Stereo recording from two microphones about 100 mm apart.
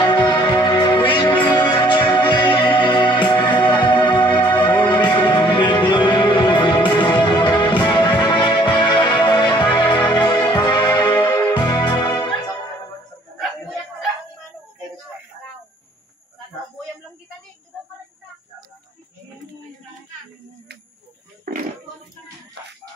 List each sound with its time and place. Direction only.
0.0 s music: 45° left (ahead or behind)